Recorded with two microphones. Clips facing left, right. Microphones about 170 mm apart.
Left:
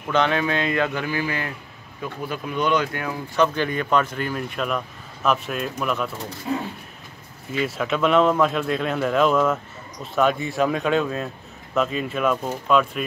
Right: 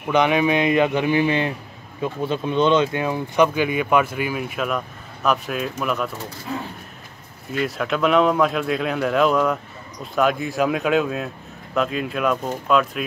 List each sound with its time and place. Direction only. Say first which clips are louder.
0.1 s speech: right 3 dB; 15° right (ahead or behind)
3.4 s speech: right 3 dB; 10° right (ahead or behind)
7.5 s speech: right 1 dB; centre (ahead or behind)